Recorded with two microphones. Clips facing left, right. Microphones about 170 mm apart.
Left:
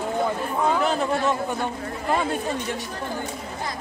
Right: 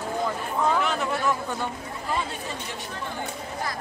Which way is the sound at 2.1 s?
55° left (ahead or behind).